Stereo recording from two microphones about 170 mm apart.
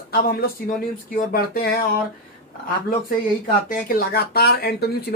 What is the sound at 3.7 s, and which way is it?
Speech, 60° left (ahead or behind).